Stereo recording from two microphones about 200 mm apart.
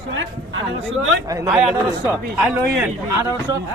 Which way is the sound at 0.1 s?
75° right (ahead or behind).